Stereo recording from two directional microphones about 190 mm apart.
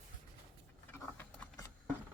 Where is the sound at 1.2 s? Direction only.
10° left (ahead or behind).